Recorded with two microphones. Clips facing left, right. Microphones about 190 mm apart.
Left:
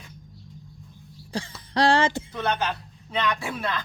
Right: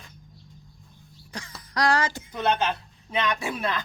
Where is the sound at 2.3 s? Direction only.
20° right (ahead or behind).